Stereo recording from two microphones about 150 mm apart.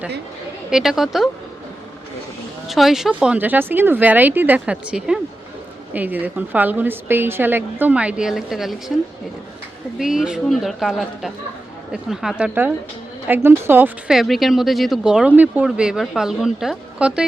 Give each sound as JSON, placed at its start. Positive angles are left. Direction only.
{"t": 0.7, "sound": "speech", "side_deg": -5}
{"t": 2.6, "sound": "a woman's voice", "side_deg": 0}
{"t": 14.2, "sound": "speech", "side_deg": 0}